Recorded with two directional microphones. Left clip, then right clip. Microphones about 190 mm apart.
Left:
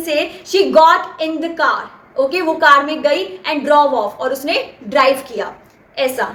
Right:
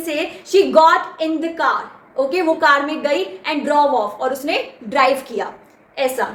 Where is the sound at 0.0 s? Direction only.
10° left (ahead or behind).